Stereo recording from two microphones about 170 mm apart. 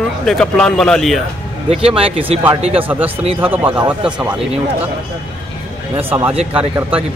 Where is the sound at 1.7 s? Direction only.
35° right (ahead or behind).